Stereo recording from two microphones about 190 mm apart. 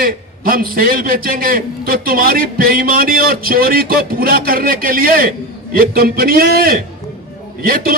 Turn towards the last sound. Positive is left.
turn(degrees=-50)  # may be behind; listen again after turning